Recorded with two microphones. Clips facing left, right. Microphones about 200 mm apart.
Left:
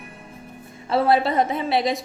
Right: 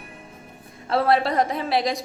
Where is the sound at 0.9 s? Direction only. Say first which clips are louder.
Left 1 dB; centre (ahead or behind).